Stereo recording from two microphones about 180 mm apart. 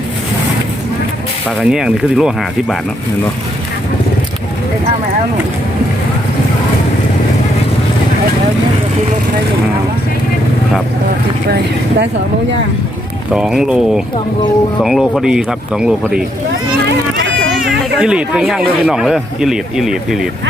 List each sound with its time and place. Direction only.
1.5 s speech: centre (ahead or behind)
11.4 s speech: 65° right (ahead or behind)
13.3 s speech: 5° right (ahead or behind)
18.0 s speech: 5° right (ahead or behind)